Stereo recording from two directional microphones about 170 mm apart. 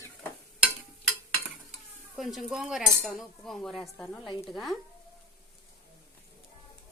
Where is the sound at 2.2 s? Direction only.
Centre (ahead or behind).